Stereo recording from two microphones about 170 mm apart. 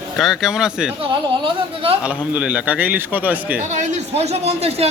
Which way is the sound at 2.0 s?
5° right (ahead or behind).